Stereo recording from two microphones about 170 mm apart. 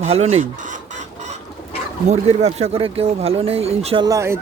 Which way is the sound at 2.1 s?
40° right (ahead or behind).